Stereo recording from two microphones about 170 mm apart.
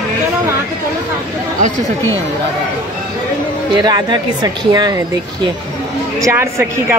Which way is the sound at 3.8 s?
25° right (ahead or behind).